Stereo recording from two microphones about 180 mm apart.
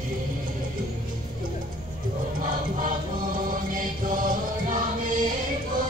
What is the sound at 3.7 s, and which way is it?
Chant, 50° right (ahead or behind).